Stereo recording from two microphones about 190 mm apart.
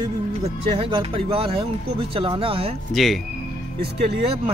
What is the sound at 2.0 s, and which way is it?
Speech, 30° right (ahead or behind).